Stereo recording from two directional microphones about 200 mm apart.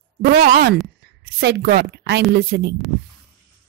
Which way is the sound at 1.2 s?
55° right (ahead or behind).